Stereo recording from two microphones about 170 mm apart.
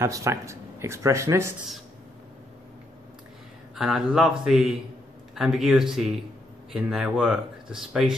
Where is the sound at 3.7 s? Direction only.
5° right (ahead or behind).